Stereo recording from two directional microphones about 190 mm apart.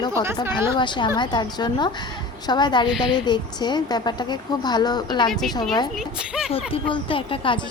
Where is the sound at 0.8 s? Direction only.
25° left (ahead or behind).